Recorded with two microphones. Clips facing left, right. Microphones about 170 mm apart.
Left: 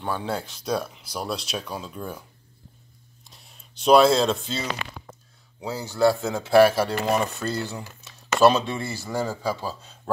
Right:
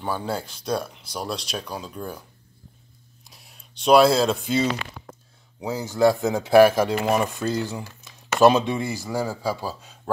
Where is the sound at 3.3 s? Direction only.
Centre (ahead or behind).